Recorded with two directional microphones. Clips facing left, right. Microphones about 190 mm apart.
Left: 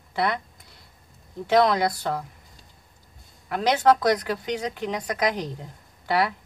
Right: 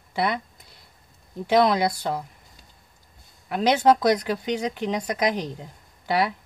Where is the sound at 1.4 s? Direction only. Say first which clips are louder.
Even; 15° right (ahead or behind).